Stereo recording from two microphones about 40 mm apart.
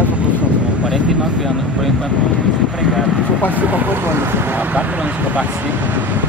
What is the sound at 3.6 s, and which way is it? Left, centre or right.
Speech, right.